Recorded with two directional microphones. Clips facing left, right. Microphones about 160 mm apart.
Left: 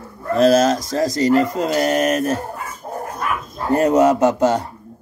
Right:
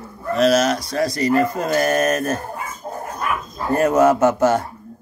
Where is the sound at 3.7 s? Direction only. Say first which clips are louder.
Left 1 dB; 15° left (ahead or behind).